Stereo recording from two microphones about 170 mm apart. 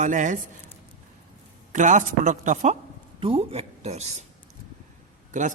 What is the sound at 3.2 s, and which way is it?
A woman's voice, 35° right (ahead or behind).